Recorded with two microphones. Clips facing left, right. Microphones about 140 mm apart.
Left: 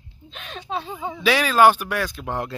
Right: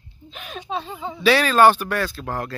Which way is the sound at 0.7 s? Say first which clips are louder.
Left 1 dB; 10° left (ahead or behind).